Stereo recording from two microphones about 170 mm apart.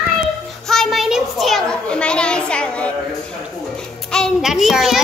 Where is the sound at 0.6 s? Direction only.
Centre (ahead or behind).